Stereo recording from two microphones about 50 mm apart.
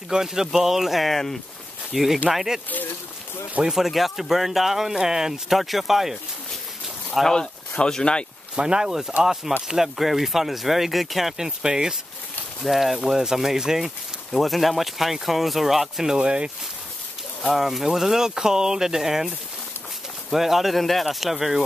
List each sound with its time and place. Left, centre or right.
0.1 s speech: centre
2.2 s speech: centre
3.6 s speech: centre
7.2 s speech: centre
8.5 s speech: centre
14.3 s speech: centre
16.2 s speech: centre
17.5 s speech: centre